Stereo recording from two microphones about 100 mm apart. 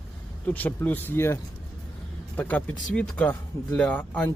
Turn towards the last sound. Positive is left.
turn(degrees=15)  # may be behind; listen again after turning